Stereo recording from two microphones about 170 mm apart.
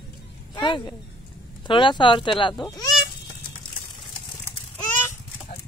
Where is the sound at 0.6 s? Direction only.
30° left (ahead or behind).